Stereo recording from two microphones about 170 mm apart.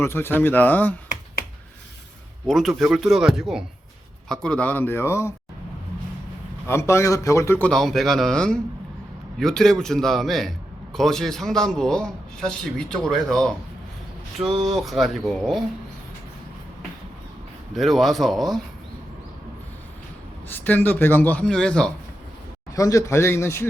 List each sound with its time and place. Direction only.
0.0 s a man's voice: 15° left (ahead or behind)
2.5 s a man's voice: centre (ahead or behind); by 5.3 s 15° left (ahead or behind)
6.7 s a man's voice: 15° left (ahead or behind); by 15.6 s centre (ahead or behind)
17.7 s a man's voice: centre (ahead or behind)
20.5 s a man's voice: 10° left (ahead or behind)
22.7 s a man's voice: 20° left (ahead or behind)